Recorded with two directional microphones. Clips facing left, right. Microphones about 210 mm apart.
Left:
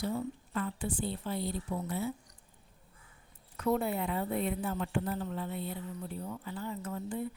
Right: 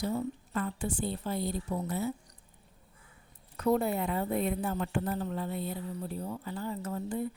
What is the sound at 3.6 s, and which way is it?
A woman's voice, 40° right (ahead or behind).